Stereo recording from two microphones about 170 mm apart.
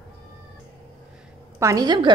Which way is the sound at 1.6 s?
20° right (ahead or behind).